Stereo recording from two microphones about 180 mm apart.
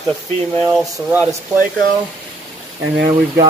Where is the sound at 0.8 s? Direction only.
10° right (ahead or behind).